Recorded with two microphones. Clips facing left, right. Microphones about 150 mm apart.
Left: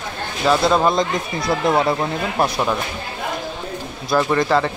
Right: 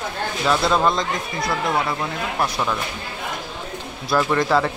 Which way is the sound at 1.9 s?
30° left (ahead or behind).